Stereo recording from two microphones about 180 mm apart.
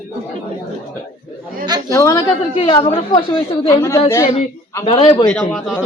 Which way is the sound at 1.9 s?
15° left (ahead or behind).